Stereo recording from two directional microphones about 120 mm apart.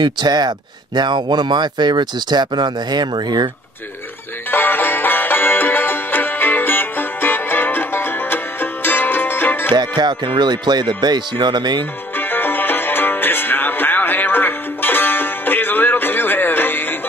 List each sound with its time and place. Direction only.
0.0 s speech: 35° right (ahead or behind)
4.5 s music: 15° left (ahead or behind)
9.8 s speech: 40° right (ahead or behind)
12.2 s music: 15° left (ahead or behind)